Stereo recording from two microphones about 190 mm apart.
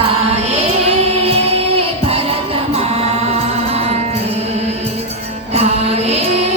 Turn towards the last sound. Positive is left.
turn(degrees=-35)  # may be behind; listen again after turning